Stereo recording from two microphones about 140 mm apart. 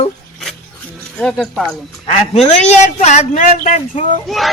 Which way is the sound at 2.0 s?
45° left (ahead or behind).